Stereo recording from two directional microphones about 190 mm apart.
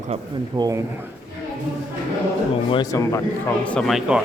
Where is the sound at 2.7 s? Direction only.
20° left (ahead or behind); by 4.2 s 5° right (ahead or behind).